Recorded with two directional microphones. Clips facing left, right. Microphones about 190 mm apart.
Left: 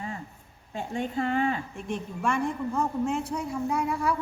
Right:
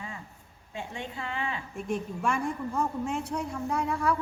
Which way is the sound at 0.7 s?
45° left (ahead or behind).